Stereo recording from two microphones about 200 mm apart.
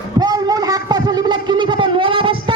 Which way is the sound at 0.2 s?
20° right (ahead or behind).